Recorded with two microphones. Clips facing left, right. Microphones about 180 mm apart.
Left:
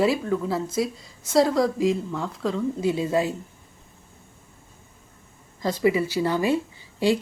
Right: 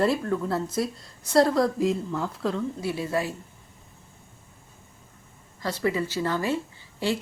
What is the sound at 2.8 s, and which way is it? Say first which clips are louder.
Speech: left 8 dB; 20° left (ahead or behind).